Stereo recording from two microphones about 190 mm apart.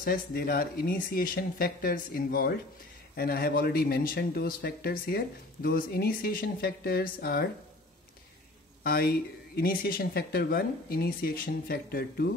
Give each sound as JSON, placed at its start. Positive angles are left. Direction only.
{"t": 0.0, "sound": "speech", "side_deg": 50}
{"t": 8.8, "sound": "speech", "side_deg": 55}